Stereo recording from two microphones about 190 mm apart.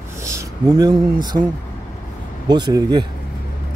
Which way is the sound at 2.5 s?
20° right (ahead or behind).